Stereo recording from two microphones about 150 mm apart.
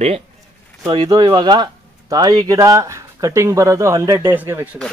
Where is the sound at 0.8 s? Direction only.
25° right (ahead or behind).